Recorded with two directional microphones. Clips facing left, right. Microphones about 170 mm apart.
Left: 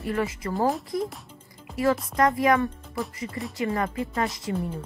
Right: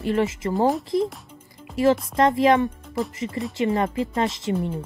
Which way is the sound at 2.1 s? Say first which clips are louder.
Right 1 dB; 25° right (ahead or behind).